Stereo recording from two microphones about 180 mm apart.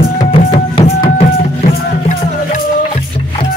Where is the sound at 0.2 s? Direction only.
30° left (ahead or behind).